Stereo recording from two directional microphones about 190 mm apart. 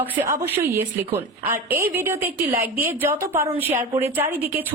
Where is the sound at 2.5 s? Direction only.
50° right (ahead or behind).